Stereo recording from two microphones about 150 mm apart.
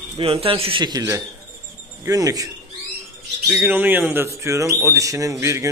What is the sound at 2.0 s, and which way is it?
Speech, 20° right (ahead or behind).